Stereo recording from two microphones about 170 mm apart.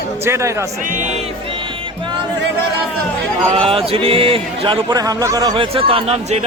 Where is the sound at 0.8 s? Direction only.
45° right (ahead or behind).